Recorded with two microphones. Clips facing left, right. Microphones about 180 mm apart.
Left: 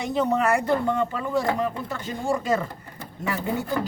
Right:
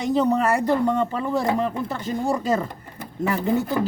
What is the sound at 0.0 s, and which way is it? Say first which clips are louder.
Speech: right 3 dB; 35° right (ahead or behind).